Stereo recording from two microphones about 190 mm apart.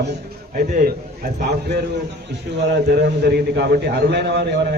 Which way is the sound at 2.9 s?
60° right (ahead or behind).